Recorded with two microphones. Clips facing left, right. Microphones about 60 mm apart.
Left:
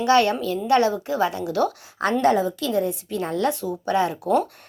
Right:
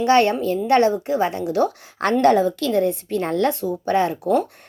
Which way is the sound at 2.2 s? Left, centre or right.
Right.